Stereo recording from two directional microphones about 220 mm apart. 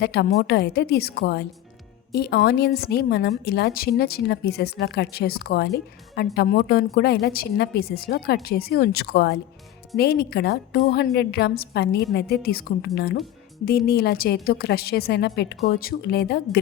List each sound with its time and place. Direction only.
0.0 s a woman's voice: 50° left (ahead or behind)